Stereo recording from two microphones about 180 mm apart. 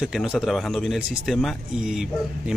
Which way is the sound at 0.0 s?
5° right (ahead or behind).